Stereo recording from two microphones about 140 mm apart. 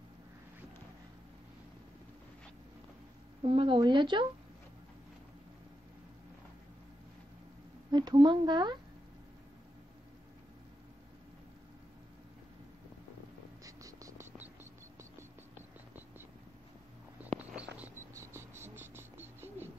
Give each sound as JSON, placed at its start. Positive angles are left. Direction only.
{"t": 3.4, "sound": "speech", "side_deg": -35}
{"t": 7.9, "sound": "speech", "side_deg": -30}
{"t": 13.7, "sound": "cricket", "side_deg": -25}
{"t": 17.5, "sound": "cricket", "side_deg": -10}